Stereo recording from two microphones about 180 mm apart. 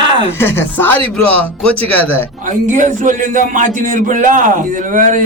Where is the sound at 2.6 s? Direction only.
45° right (ahead or behind).